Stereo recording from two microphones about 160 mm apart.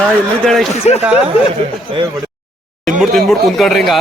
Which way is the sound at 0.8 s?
45° left (ahead or behind).